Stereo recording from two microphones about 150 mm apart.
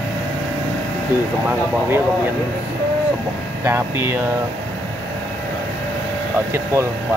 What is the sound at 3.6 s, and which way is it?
Speech, 15° right (ahead or behind).